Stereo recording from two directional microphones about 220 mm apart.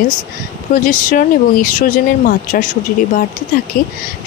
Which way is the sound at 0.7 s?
40° left (ahead or behind).